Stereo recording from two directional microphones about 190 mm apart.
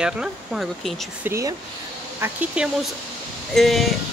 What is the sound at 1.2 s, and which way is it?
Speech, 15° right (ahead or behind).